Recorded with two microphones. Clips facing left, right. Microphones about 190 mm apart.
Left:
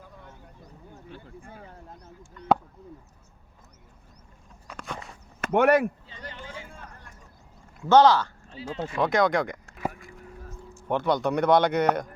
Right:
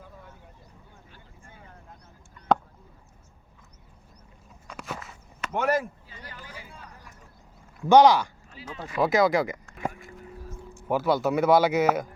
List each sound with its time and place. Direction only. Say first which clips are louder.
4.7 s walk: right 1 dB; 5° right (ahead or behind)
5.4 s speech: left 6 dB; 60° left (ahead or behind)
6.1 s a sound: left 4 dB; 25° left (ahead or behind)
6.7 s vehicle: left 1 dB; 45° left (ahead or behind)
7.9 s speech: right 1 dB; 15° right (ahead or behind)
8.4 s speech: left 6 dB; 30° left (ahead or behind)
9.0 s speech: right 2 dB; 5° right (ahead or behind)